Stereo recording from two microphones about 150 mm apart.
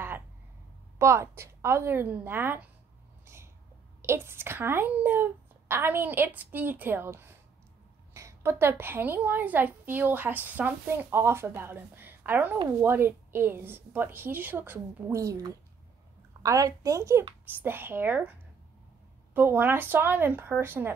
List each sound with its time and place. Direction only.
0.9 s a woman's voice: 20° right (ahead or behind)
3.3 s a sound: 15° right (ahead or behind)
4.0 s a woman's voice: 15° right (ahead or behind)
19.3 s a woman's voice: 15° right (ahead or behind)